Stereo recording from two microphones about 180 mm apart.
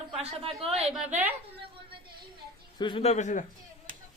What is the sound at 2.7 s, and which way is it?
Speech, 30° left (ahead or behind).